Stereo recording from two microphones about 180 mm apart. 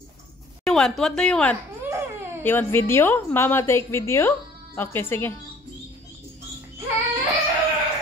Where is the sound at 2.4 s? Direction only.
10° left (ahead or behind).